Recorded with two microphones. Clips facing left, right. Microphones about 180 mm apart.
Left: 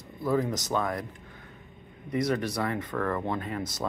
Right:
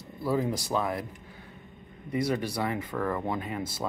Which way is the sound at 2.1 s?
25° right (ahead or behind).